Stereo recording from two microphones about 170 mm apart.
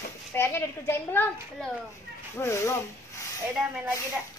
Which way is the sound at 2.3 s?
15° left (ahead or behind).